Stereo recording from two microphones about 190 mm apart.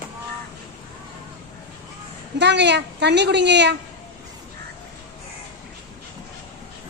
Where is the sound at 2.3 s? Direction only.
65° right (ahead or behind).